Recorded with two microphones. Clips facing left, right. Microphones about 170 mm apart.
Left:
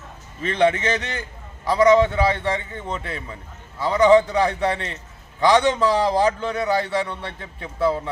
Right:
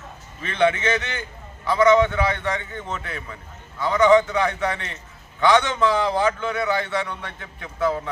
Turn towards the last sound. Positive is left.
turn(degrees=30)  # may be behind; listen again after turning